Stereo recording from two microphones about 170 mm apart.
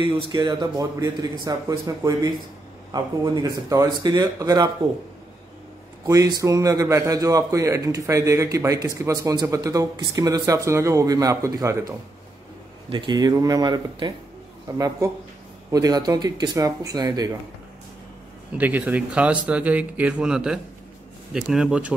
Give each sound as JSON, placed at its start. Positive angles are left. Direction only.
{"t": 0.0, "sound": "speech", "side_deg": -25}
{"t": 3.4, "sound": "speech", "side_deg": -20}
{"t": 6.0, "sound": "speech", "side_deg": -20}
{"t": 12.9, "sound": "speech", "side_deg": -25}
{"t": 18.6, "sound": "speech", "side_deg": -10}